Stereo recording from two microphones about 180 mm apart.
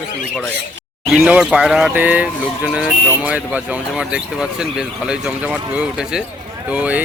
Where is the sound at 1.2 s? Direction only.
5° right (ahead or behind).